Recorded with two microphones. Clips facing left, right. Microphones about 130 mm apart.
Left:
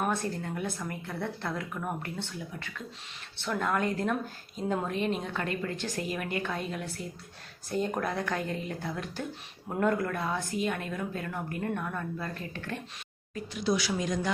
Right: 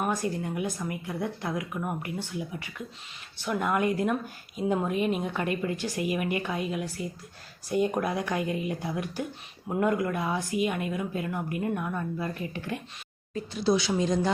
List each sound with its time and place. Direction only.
0.0 s speech: 10° right (ahead or behind)
13.3 s speech: 30° right (ahead or behind)